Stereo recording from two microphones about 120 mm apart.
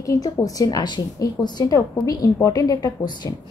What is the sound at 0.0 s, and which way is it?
A woman's voice, 25° left (ahead or behind).